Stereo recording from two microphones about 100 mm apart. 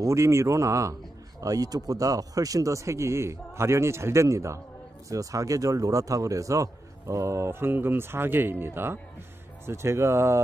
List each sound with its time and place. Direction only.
0.0 s a man's voice: 30° right (ahead or behind)